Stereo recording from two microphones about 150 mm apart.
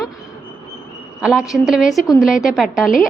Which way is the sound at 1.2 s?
5° right (ahead or behind).